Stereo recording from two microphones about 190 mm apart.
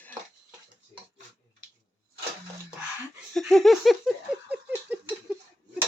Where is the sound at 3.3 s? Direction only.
Centre (ahead or behind).